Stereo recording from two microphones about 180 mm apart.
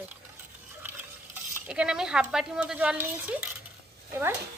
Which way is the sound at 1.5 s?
5° right (ahead or behind).